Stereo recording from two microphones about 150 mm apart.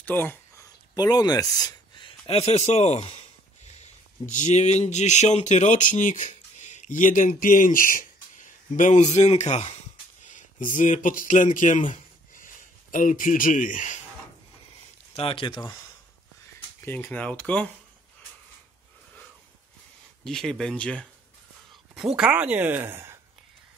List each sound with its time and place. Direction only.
0.0 s a sound: 10° left (ahead or behind)
0.9 s speech: 25° left (ahead or behind); by 11.8 s 55° left (ahead or behind)
12.9 s speech: 60° left (ahead or behind)
15.1 s speech: 35° left (ahead or behind)
16.5 s speech: 15° left (ahead or behind)
20.2 s speech: 5° left (ahead or behind)
21.9 s speech: 5° right (ahead or behind)